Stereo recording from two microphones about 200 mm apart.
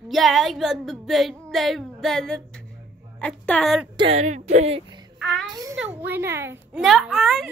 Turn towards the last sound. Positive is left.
turn(degrees=0)  # may be behind; listen again after turning